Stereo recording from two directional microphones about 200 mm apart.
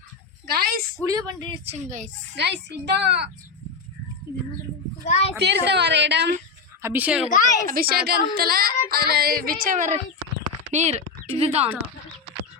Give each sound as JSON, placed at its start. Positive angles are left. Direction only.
{"t": 0.4, "sound": "speech", "side_deg": -50}
{"t": 1.0, "sound": "a woman's voice", "side_deg": -20}
{"t": 1.6, "sound": "speech", "side_deg": -40}
{"t": 2.3, "sound": "a woman's voice", "side_deg": -60}
{"t": 5.0, "sound": "speech", "side_deg": 35}
{"t": 5.4, "sound": "a woman's voice", "side_deg": -55}
{"t": 6.8, "sound": "a woman's voice", "side_deg": -10}
{"t": 7.7, "sound": "speech", "side_deg": -50}